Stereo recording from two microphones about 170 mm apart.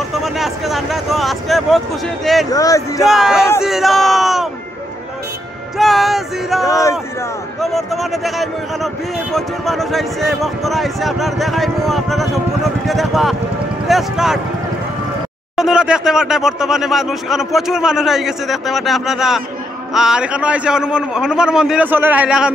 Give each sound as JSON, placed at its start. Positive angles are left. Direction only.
{"t": 0.1, "sound": "a man's voice", "side_deg": 0}
{"t": 2.5, "sound": "speech", "side_deg": 20}
{"t": 3.0, "sound": "a man's voice", "side_deg": 0}
{"t": 5.8, "sound": "a man's voice", "side_deg": 0}
{"t": 6.6, "sound": "speech", "side_deg": 20}
{"t": 7.6, "sound": "a man's voice", "side_deg": 0}
{"t": 15.5, "sound": "a man's voice", "side_deg": -5}